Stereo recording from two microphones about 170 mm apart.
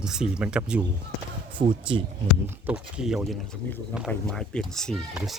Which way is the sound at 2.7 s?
5° right (ahead or behind).